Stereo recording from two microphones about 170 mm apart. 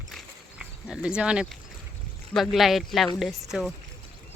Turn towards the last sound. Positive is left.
turn(degrees=0)  # may be behind; listen again after turning